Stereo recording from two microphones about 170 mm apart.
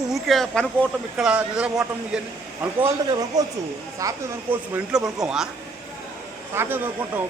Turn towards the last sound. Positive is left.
turn(degrees=-10)  # may be behind; listen again after turning